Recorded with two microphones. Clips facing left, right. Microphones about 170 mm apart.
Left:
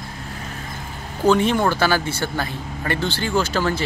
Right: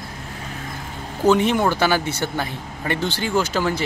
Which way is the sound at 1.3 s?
15° right (ahead or behind).